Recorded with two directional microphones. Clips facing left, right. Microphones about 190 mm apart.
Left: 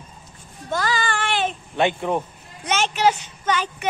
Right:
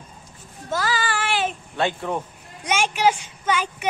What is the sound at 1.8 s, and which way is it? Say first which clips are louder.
Speech: left 3 dB; 20° left (ahead or behind).